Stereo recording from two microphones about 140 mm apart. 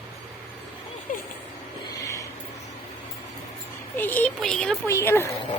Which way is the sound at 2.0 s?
20° left (ahead or behind).